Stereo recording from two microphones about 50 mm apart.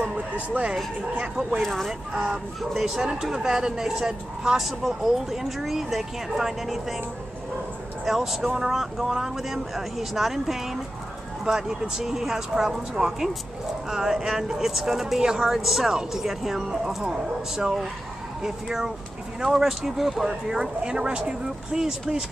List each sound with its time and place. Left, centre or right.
0.0 s a sound: right
1.1 s speech: centre
1.6 s speech: centre
2.1 s speech: centre
8.0 s speech: centre